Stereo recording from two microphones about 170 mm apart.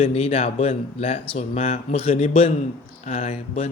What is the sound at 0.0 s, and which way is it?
Speech, 35° left (ahead or behind).